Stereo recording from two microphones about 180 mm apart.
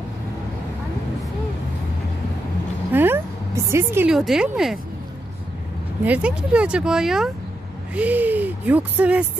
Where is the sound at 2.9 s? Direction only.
10° right (ahead or behind).